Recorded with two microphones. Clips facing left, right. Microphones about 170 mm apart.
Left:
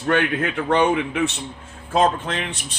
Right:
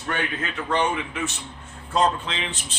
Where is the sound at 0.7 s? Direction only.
75° left (ahead or behind).